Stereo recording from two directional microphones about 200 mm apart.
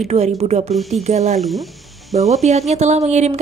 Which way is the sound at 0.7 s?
Centre (ahead or behind).